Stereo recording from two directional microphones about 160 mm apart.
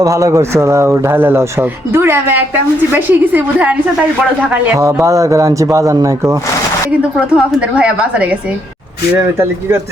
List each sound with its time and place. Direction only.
0.0 s speech: 20° right (ahead or behind)
4.8 s speech: 20° right (ahead or behind)
7.3 s speech: 5° right (ahead or behind)